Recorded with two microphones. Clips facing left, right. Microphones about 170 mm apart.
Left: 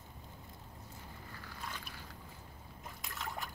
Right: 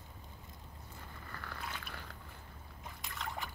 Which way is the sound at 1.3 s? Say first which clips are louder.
Right 2 dB; 65° right (ahead or behind).